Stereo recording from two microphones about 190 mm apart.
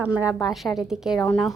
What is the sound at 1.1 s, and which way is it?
Speech, 10° left (ahead or behind).